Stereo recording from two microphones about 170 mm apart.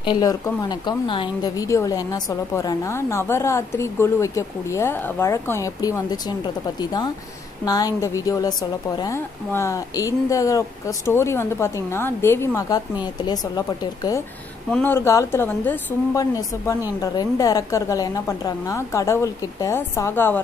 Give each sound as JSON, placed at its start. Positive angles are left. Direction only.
{"t": 0.0, "sound": "a woman's voice", "side_deg": 25}
{"t": 14.7, "sound": "speech", "side_deg": 10}
{"t": 17.0, "sound": "a woman's voice", "side_deg": 20}